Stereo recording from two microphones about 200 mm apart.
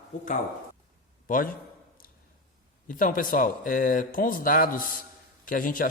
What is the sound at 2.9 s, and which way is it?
Speech, 45° left (ahead or behind).